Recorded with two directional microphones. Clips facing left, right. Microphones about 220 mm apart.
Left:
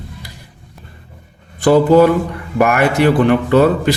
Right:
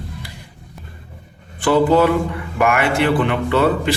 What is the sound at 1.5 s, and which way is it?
A man's voice, 40° left (ahead or behind).